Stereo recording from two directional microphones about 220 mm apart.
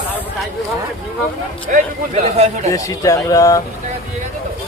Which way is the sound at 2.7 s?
15° left (ahead or behind).